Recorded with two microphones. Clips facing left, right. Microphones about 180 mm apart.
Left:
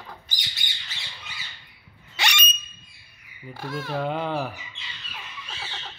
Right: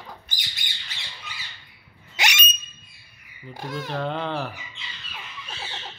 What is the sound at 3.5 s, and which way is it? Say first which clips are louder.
Speech: even; 15° right (ahead or behind).